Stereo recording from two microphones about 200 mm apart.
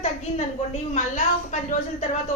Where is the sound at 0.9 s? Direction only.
35° left (ahead or behind).